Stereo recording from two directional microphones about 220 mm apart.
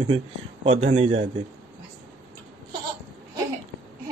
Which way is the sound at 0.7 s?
30° right (ahead or behind).